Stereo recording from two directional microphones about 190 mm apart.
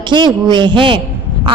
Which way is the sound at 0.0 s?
25° right (ahead or behind).